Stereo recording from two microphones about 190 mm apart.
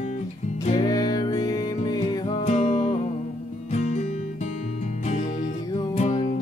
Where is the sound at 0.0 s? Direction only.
40° left (ahead or behind).